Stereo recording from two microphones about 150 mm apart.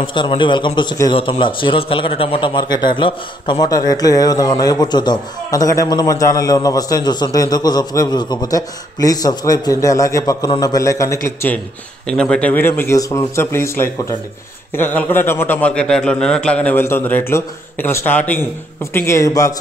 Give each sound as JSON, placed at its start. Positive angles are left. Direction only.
{"t": 0.0, "sound": "a man's voice", "side_deg": 30}